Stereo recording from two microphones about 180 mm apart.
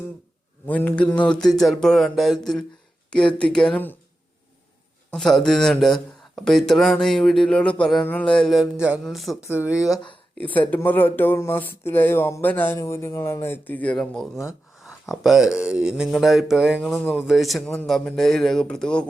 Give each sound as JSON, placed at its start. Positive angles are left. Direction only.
{"t": 0.7, "sound": "speech", "side_deg": 10}
{"t": 5.1, "sound": "speech", "side_deg": 5}
{"t": 10.3, "sound": "speech", "side_deg": 10}
{"t": 14.8, "sound": "a sound", "side_deg": 0}
{"t": 15.6, "sound": "speech", "side_deg": -5}